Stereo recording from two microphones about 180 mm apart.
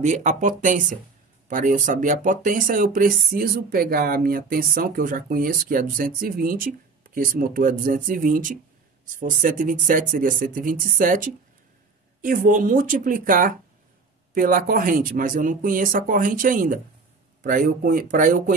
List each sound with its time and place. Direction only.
0.0 s speech: 40° right (ahead or behind)